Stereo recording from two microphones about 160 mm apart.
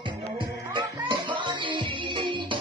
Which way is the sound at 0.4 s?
30° right (ahead or behind).